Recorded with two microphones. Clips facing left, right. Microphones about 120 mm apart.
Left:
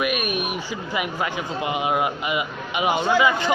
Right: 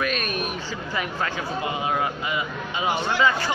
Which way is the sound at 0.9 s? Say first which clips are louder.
Left 2 dB; 15° left (ahead or behind).